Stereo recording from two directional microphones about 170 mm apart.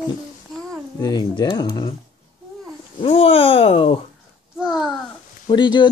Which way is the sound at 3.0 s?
35° left (ahead or behind).